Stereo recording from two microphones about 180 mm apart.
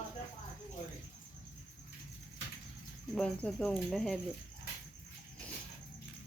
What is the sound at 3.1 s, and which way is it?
Speech, 5° left (ahead or behind).